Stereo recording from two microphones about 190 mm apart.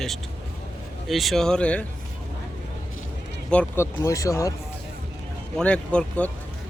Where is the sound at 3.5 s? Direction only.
15° left (ahead or behind).